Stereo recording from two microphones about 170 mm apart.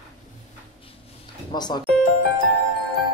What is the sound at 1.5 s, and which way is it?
Speech, 25° left (ahead or behind).